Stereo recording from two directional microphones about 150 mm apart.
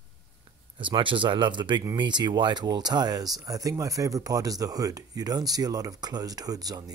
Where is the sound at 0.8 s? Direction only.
35° right (ahead or behind).